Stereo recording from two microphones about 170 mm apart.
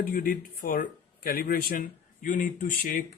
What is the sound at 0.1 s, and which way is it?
Speech, 60° left (ahead or behind).